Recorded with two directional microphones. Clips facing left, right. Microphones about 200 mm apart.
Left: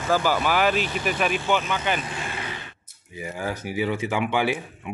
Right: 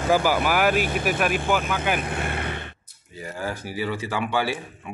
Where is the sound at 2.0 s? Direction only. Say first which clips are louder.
Right 4 dB; 60° right (ahead or behind).